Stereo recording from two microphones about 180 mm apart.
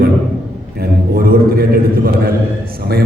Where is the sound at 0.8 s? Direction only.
55° right (ahead or behind).